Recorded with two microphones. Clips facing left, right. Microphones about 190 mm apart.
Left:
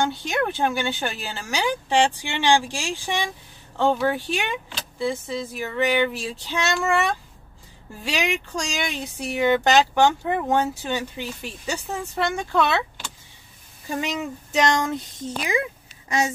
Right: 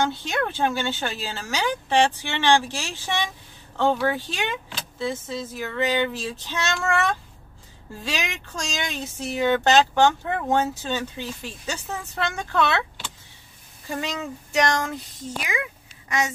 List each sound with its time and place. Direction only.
0.1 s speech: 15° left (ahead or behind)
14.0 s female singing: 20° left (ahead or behind)
15.4 s a woman's voice: 30° left (ahead or behind)